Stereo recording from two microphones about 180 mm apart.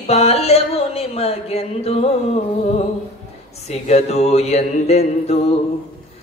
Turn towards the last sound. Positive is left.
turn(degrees=35)  # may be behind; listen again after turning